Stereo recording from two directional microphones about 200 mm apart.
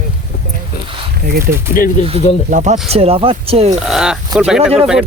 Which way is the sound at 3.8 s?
5° right (ahead or behind).